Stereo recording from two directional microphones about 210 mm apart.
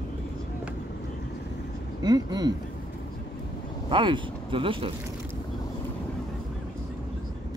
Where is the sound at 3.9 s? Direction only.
25° right (ahead or behind).